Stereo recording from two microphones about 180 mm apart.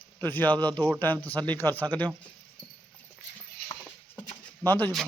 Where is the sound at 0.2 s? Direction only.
10° left (ahead or behind).